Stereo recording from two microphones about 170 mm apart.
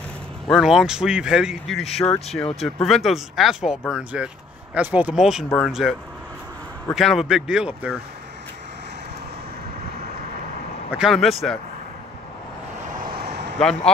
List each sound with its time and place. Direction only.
0.5 s speech: 5° right (ahead or behind)
1.9 s speech: 35° left (ahead or behind)
2.6 s speech: centre (ahead or behind)
10.9 s speech: 5° right (ahead or behind)
13.0 s vehicle: 70° right (ahead or behind)
13.6 s speech: 5° left (ahead or behind)